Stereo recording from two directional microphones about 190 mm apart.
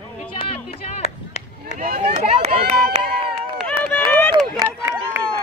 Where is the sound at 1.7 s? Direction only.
50° right (ahead or behind).